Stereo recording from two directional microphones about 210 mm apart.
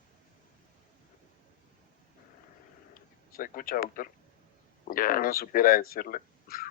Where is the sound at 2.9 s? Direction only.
40° left (ahead or behind).